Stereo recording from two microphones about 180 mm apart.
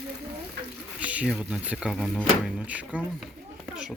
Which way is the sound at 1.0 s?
5° right (ahead or behind).